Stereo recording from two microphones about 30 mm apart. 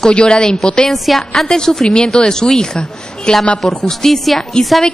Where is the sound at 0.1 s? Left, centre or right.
Left.